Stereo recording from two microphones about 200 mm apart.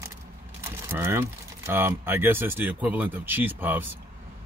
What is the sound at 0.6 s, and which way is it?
Speech, 10° right (ahead or behind).